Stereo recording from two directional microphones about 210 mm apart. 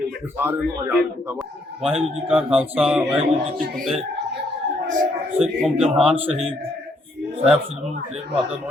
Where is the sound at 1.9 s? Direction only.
30° right (ahead or behind).